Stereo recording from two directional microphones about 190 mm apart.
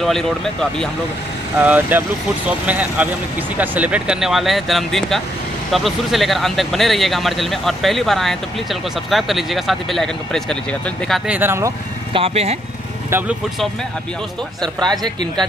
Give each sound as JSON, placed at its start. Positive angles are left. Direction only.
{"t": 0.0, "sound": "speech", "side_deg": 0}
{"t": 1.6, "sound": "speech", "side_deg": -10}
{"t": 12.1, "sound": "speech", "side_deg": -30}
{"t": 13.1, "sound": "speech", "side_deg": -15}